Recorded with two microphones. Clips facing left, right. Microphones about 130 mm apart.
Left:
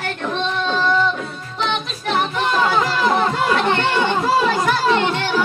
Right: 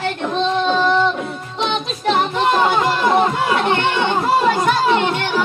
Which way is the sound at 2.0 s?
25° right (ahead or behind).